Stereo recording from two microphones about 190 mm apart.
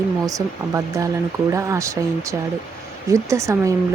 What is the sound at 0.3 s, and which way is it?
Speech, 15° right (ahead or behind).